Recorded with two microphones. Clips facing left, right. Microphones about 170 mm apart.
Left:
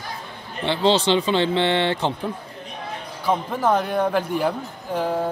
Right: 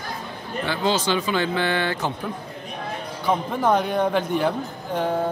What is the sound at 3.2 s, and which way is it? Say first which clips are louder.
Speech: even; 5° left (ahead or behind).